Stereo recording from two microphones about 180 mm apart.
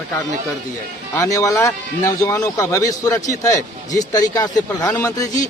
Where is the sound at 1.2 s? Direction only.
15° left (ahead or behind).